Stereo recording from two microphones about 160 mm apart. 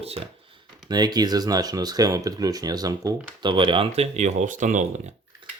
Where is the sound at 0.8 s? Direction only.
25° right (ahead or behind); by 5.1 s 50° right (ahead or behind).